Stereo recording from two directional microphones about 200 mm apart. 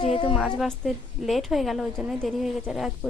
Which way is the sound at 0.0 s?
30° left (ahead or behind).